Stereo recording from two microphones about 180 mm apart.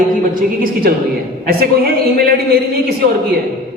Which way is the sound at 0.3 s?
55° right (ahead or behind).